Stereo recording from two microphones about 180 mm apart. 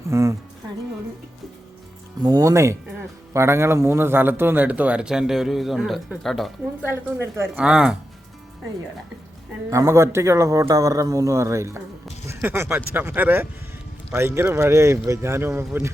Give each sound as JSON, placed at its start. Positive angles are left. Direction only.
{"t": 0.1, "sound": "music", "side_deg": -15}
{"t": 2.2, "sound": "a man's voice", "side_deg": -20}
{"t": 6.8, "sound": "a man's voice", "side_deg": -15}
{"t": 9.6, "sound": "a man's voice", "side_deg": -15}